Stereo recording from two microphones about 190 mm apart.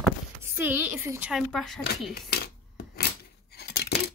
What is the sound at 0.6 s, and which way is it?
Speech, 10° right (ahead or behind).